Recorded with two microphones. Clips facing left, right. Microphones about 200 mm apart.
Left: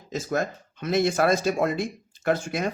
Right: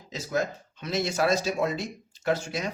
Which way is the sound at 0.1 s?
50° left (ahead or behind).